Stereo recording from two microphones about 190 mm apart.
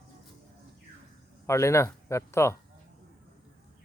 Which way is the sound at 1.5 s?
15° left (ahead or behind).